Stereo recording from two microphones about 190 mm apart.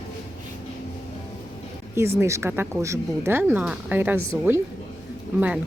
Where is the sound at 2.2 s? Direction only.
15° right (ahead or behind).